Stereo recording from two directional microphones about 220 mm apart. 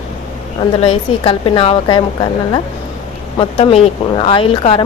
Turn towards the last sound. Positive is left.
turn(degrees=25)  # may be behind; listen again after turning